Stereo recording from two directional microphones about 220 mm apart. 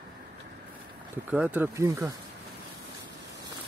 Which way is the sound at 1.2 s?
5° right (ahead or behind).